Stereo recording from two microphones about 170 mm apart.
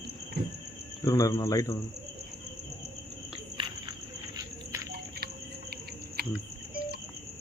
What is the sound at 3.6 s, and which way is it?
Cricket, 30° right (ahead or behind).